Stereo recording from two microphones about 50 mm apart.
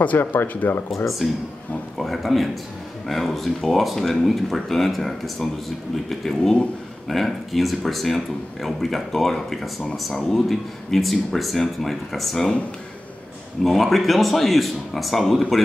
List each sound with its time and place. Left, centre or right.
0.0 s speech: left
1.0 s speech: centre
13.7 s speech: centre